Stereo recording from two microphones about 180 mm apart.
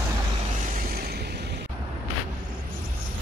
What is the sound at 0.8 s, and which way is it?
Vehicle, 60° right (ahead or behind).